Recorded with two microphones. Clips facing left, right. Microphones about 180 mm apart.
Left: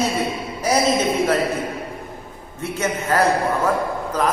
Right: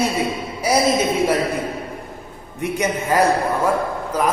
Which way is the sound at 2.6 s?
15° right (ahead or behind).